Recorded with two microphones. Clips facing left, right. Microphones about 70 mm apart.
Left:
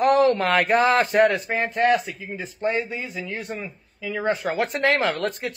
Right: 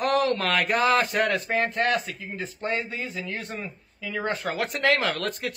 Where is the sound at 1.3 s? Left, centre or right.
Centre.